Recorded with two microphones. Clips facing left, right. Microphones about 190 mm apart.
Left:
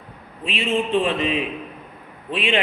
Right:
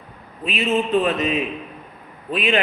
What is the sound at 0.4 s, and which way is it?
A man's voice, 30° left (ahead or behind).